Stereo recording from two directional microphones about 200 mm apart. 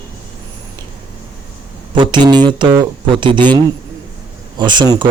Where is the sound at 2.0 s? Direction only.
20° right (ahead or behind).